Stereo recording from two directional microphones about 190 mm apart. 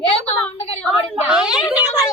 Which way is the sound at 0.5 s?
30° left (ahead or behind).